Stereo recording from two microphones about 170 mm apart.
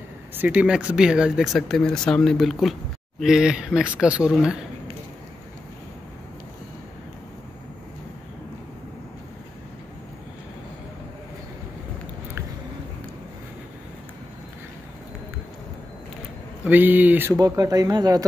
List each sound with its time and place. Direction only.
0.4 s speech: 5° right (ahead or behind)
16.6 s speech: 10° right (ahead or behind)